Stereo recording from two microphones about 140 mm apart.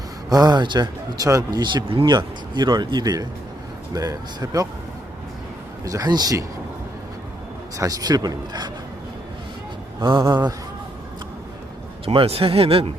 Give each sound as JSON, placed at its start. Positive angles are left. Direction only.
{"t": 0.3, "sound": "speech", "side_deg": -30}
{"t": 5.8, "sound": "speech", "side_deg": -25}
{"t": 7.8, "sound": "speech", "side_deg": -25}
{"t": 10.0, "sound": "speech", "side_deg": -35}
{"t": 12.0, "sound": "speech", "side_deg": -45}